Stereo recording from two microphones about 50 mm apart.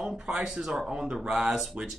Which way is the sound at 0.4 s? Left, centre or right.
Centre.